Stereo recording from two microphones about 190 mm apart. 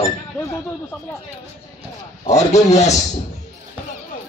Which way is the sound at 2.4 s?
35° left (ahead or behind).